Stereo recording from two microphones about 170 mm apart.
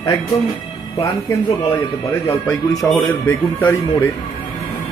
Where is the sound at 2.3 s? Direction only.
15° left (ahead or behind).